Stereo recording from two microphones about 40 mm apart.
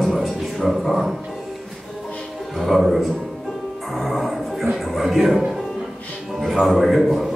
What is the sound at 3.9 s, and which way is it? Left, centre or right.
Music, centre.